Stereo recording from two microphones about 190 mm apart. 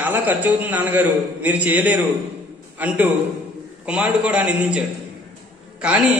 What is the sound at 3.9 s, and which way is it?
Speech, 5° right (ahead or behind).